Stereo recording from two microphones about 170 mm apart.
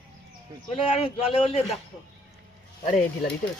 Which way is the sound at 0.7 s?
35° left (ahead or behind).